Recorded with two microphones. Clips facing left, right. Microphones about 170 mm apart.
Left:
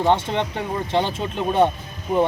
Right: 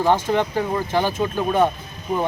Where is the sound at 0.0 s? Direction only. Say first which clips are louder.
Right 1 dB; 25° left (ahead or behind).